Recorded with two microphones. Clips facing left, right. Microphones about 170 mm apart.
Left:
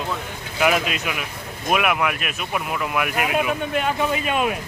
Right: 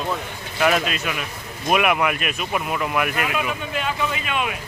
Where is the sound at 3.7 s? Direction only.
45° left (ahead or behind).